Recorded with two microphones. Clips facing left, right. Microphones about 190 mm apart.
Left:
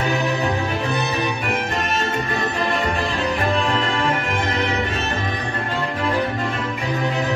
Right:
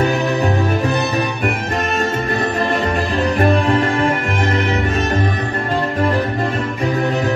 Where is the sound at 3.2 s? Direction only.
45° right (ahead or behind).